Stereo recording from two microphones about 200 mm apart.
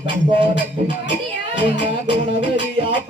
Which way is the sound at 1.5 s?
25° right (ahead or behind).